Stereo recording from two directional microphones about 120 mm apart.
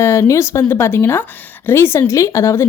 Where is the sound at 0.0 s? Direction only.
20° left (ahead or behind).